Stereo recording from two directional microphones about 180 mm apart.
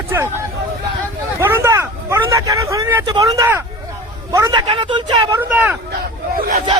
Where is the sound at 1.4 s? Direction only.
15° right (ahead or behind).